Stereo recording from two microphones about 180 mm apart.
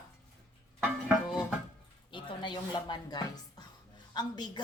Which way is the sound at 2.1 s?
25° left (ahead or behind).